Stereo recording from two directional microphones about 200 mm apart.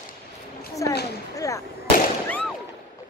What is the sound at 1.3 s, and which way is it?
Fireworks, 15° left (ahead or behind).